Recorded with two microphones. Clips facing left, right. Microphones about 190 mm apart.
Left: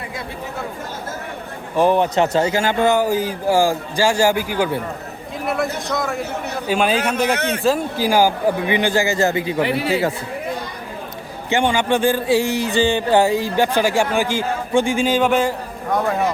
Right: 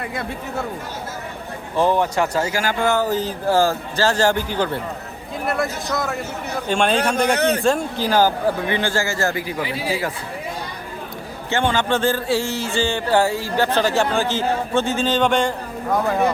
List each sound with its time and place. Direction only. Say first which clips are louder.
1.7 s speech: left 3 dB; 15° left (ahead or behind)
5.5 s speech: left 1 dB; centre (ahead or behind)
7.3 s speech: right 4 dB; 35° right (ahead or behind)
7.6 s speech: left 1 dB; 5° left (ahead or behind); by 9.6 s 20° left (ahead or behind)
9.6 s speech: left 5 dB; 65° left (ahead or behind)
11.4 s speech: left 2 dB; 15° left (ahead or behind); by 16.3 s centre (ahead or behind)